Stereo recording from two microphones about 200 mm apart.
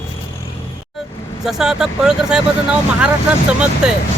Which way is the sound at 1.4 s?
Centre (ahead or behind).